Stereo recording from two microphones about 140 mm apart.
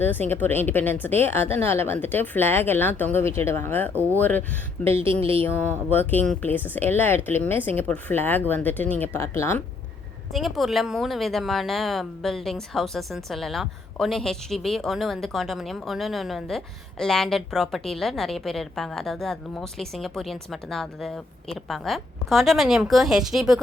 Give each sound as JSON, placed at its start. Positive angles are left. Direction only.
{"t": 0.0, "sound": "speech", "side_deg": 15}
{"t": 3.9, "sound": "speech", "side_deg": -20}
{"t": 4.2, "sound": "speech", "side_deg": 15}
{"t": 5.2, "sound": "speech", "side_deg": -45}
{"t": 5.9, "sound": "speech", "side_deg": 15}
{"t": 10.3, "sound": "speech", "side_deg": 0}